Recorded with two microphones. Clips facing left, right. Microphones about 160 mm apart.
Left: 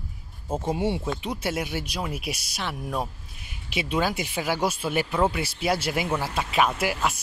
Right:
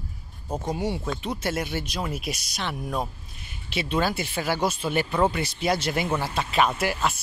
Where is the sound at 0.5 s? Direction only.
25° left (ahead or behind).